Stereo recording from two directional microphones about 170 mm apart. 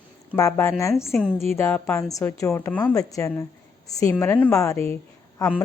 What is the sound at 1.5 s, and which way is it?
A woman's voice, 15° left (ahead or behind).